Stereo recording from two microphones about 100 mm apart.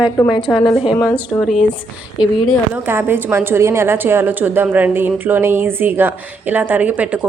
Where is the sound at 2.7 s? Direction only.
20° right (ahead or behind).